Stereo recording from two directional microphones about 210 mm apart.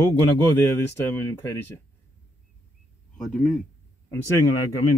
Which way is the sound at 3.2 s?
Centre (ahead or behind).